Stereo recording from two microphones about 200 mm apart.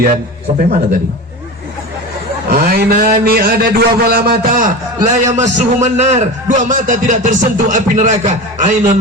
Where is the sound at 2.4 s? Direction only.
50° right (ahead or behind).